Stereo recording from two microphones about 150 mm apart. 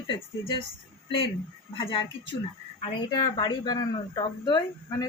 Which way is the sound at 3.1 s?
25° left (ahead or behind).